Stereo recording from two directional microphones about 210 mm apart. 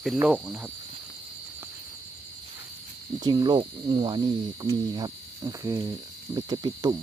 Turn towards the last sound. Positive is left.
turn(degrees=-20)  # may be behind; listen again after turning